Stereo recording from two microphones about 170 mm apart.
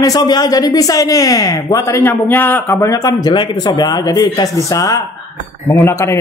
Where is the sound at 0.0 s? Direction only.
20° left (ahead or behind).